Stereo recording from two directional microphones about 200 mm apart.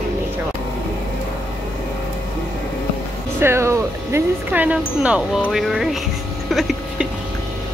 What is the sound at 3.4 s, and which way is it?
Speech, 15° right (ahead or behind).